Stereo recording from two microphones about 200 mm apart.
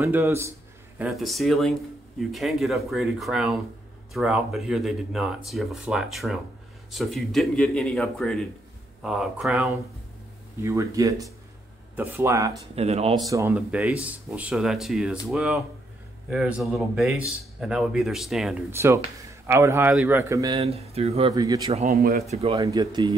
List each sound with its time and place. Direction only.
0.0 s speech: 15° right (ahead or behind)
0.9 s speech: centre (ahead or behind)
10.6 s speech: 15° right (ahead or behind)
12.7 s speech: 30° right (ahead or behind)
13.3 s speech: 10° right (ahead or behind)
18.7 s speech: 10° right (ahead or behind)
19.9 s speech: centre (ahead or behind)
20.2 s speech: 15° right (ahead or behind)
20.6 s speech: 30° right (ahead or behind)
21.3 s speech: 20° right (ahead or behind)
21.9 s speech: 50° right (ahead or behind)
22.3 s speech: 30° right (ahead or behind)
22.6 s speech: 20° right (ahead or behind)